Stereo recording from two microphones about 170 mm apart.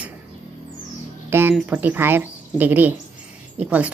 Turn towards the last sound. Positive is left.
turn(degrees=-10)  # may be behind; listen again after turning